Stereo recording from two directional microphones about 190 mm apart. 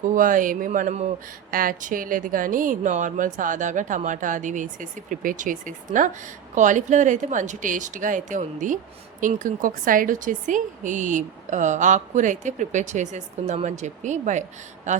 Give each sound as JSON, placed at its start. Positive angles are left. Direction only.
{"t": 0.1, "sound": "speech", "side_deg": -45}
{"t": 1.5, "sound": "a woman's voice", "side_deg": -50}